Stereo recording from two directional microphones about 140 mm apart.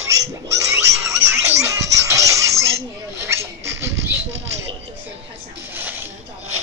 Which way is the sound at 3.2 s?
20° right (ahead or behind).